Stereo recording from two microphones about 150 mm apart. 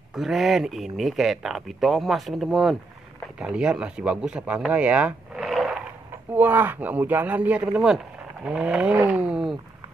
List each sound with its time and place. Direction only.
0.1 s speech: centre (ahead or behind)
6.3 s speech: 15° right (ahead or behind)